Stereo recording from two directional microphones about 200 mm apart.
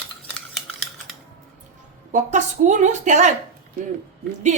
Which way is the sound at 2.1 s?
35° right (ahead or behind).